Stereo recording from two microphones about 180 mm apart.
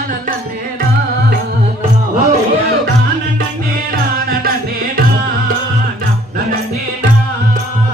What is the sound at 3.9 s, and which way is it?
Music, 55° right (ahead or behind).